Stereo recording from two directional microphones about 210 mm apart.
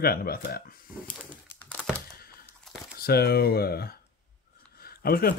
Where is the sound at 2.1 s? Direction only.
45° left (ahead or behind).